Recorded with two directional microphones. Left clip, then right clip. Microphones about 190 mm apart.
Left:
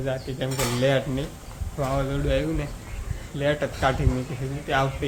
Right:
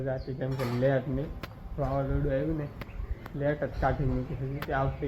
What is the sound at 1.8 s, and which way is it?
Speech, 10° left (ahead or behind).